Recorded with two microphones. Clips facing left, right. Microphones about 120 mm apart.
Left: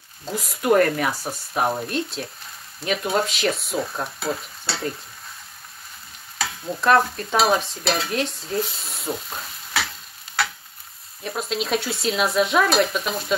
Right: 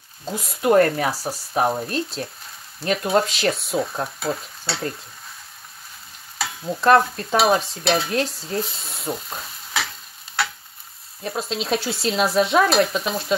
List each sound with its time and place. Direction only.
0.7 s speech: 35° right (ahead or behind)
1.2 s stir: centre (ahead or behind)
6.3 s stir: centre (ahead or behind)
11.5 s stir: centre (ahead or behind)